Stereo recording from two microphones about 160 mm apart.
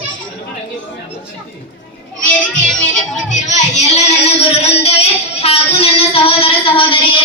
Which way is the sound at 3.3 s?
45° left (ahead or behind).